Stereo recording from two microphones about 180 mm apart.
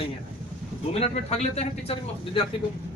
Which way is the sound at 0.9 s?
35° left (ahead or behind).